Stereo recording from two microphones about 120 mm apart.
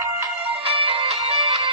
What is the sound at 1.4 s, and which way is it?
Music, 40° right (ahead or behind).